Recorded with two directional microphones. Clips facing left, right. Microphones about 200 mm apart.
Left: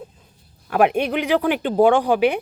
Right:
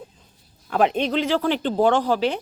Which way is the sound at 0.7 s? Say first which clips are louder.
Left 2 dB; 10° left (ahead or behind).